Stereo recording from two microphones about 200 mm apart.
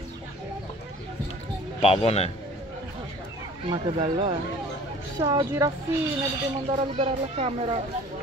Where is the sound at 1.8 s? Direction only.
30° left (ahead or behind).